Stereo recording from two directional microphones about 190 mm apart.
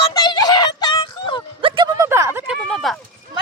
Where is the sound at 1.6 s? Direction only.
25° right (ahead or behind).